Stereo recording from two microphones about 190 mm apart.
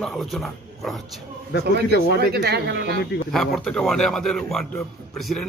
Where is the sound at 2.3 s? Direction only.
60° right (ahead or behind).